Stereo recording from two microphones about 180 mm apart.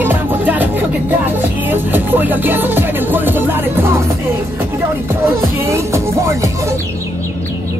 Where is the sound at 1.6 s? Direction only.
10° right (ahead or behind).